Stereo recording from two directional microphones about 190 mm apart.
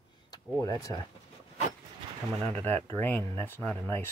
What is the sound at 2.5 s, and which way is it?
Speech, 10° left (ahead or behind).